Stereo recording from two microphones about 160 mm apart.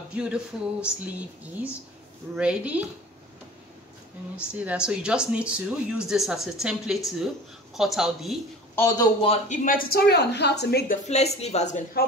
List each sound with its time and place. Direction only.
0.1 s speech: 5° right (ahead or behind)
2.3 s speech: 5° right (ahead or behind)
4.4 s speech: 10° right (ahead or behind)
8.7 s a man's voice: 20° left (ahead or behind)
9.7 s a woman's voice: 75° left (ahead or behind)
11.1 s speech: 40° left (ahead or behind)